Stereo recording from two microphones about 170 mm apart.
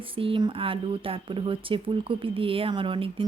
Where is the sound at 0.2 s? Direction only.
30° right (ahead or behind).